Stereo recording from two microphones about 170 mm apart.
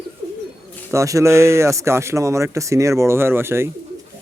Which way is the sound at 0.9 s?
20° right (ahead or behind).